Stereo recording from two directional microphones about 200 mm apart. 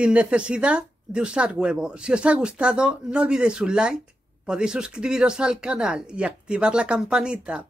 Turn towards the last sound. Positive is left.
turn(degrees=-5)  # may be behind; listen again after turning